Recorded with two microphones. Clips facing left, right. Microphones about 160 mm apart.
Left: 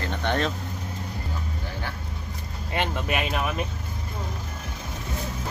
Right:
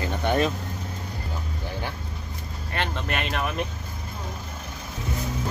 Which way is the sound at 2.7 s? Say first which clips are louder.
Left 2 dB; 15° left (ahead or behind).